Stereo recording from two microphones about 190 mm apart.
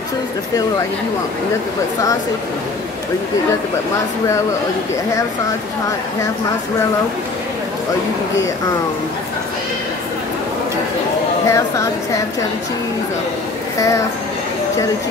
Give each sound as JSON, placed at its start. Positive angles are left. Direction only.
{"t": 11.4, "sound": "speech", "side_deg": 15}
{"t": 13.7, "sound": "speech", "side_deg": 15}